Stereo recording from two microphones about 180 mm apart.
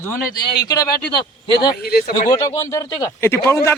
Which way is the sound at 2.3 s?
25° left (ahead or behind).